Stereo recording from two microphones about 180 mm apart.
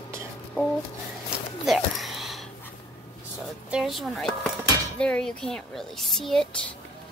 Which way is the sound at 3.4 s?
Centre (ahead or behind).